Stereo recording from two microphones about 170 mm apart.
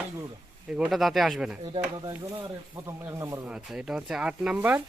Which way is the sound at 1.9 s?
25° right (ahead or behind).